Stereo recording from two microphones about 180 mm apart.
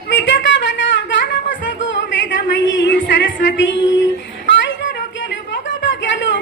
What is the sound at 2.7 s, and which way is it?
Music, 85° left.